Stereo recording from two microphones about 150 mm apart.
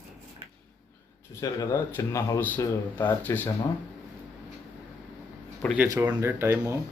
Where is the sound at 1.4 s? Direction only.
20° left (ahead or behind).